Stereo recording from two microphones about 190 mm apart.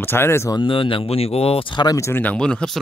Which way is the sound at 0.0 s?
10° left (ahead or behind).